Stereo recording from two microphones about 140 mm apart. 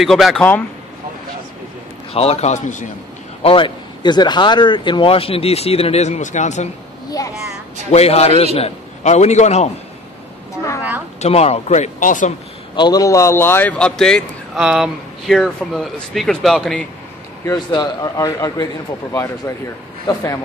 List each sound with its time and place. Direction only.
0.0 s a man's voice: centre (ahead or behind)
2.1 s a man's voice: 50° left (ahead or behind)
3.4 s speech: 35° left (ahead or behind); by 6.7 s 55° left (ahead or behind)
7.9 s a man's voice: 50° left (ahead or behind)
11.1 s speech: 50° left (ahead or behind); by 12.4 s 65° left (ahead or behind)
12.7 s a man's voice: 30° left (ahead or behind); by 16.8 s 5° left (ahead or behind)
17.5 s a man's voice: 30° left (ahead or behind)